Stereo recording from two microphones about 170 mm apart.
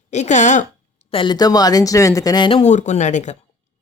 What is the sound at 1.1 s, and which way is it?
Speech, 25° left (ahead or behind).